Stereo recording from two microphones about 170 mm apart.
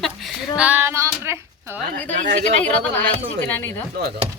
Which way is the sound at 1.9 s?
45° right (ahead or behind).